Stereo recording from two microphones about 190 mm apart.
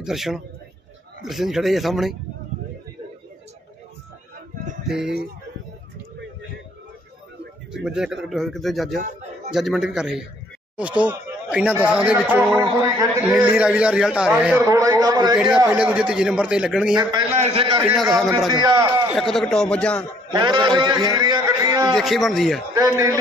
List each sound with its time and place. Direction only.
0.0 s a man's voice: centre (ahead or behind)
4.8 s speech: 5° right (ahead or behind)
7.7 s a man's voice: 5° right (ahead or behind); by 15.3 s 20° right (ahead or behind)
15.3 s a man's voice: 5° right (ahead or behind)
17.0 s a man's voice: 25° right (ahead or behind)
19.1 s a man's voice: centre (ahead or behind)
20.3 s a man's voice: 25° right (ahead or behind)
21.9 s a man's voice: centre (ahead or behind)
22.8 s a man's voice: 15° right (ahead or behind)